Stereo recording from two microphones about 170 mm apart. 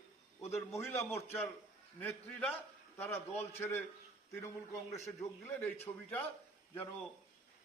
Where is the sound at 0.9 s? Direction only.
15° left (ahead or behind).